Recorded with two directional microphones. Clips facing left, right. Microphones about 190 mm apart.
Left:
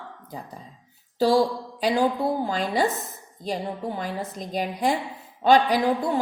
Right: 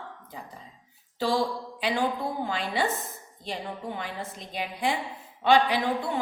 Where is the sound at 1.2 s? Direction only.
40° left (ahead or behind).